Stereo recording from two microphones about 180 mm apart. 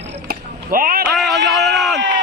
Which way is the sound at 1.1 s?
Centre (ahead or behind).